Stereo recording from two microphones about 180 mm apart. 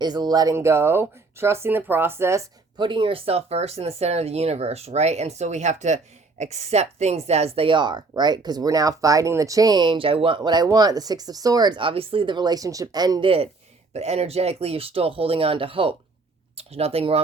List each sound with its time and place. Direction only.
0.0 s speech: 25° right (ahead or behind)